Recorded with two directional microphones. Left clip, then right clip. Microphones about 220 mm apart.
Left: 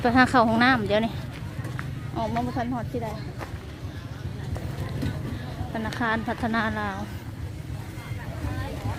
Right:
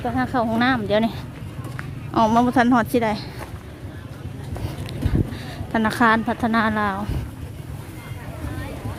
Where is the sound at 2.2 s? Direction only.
35° right (ahead or behind).